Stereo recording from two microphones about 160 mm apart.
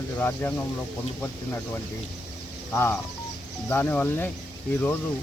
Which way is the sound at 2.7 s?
15° left (ahead or behind).